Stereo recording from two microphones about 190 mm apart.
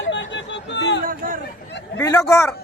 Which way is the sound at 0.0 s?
75° left (ahead or behind).